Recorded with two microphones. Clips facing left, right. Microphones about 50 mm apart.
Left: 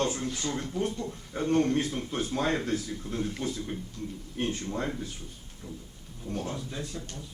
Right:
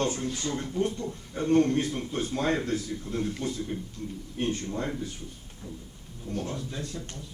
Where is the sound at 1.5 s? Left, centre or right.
Left.